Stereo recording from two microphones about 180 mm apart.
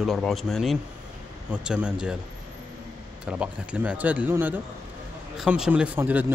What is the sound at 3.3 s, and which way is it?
Speech, 5° right (ahead or behind).